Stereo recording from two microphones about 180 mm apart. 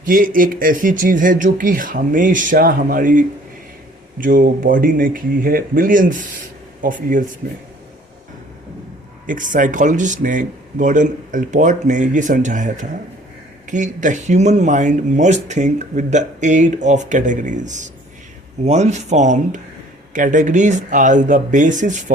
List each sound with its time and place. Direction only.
0.0 s speech: 50° right (ahead or behind)
9.2 s speech: 45° right (ahead or behind)